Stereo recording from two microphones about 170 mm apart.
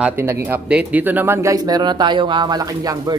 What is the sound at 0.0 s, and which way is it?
Speech, 15° right (ahead or behind).